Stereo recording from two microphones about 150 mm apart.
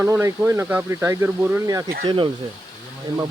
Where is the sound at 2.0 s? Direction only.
35° right (ahead or behind).